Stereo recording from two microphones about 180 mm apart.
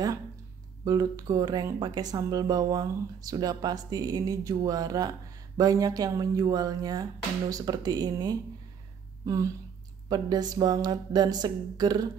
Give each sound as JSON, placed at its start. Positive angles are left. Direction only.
{"t": 0.8, "sound": "speech", "side_deg": -20}